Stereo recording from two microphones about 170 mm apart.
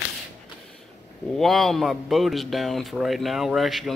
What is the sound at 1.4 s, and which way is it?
A man's voice, centre (ahead or behind).